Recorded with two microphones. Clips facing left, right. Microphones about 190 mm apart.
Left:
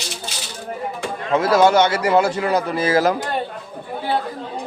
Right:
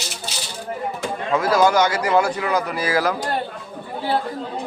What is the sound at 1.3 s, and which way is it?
Speech, 25° left (ahead or behind).